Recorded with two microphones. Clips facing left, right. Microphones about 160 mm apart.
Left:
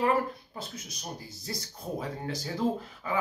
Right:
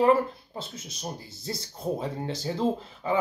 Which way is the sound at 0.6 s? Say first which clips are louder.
Right 3 dB; 25° right (ahead or behind).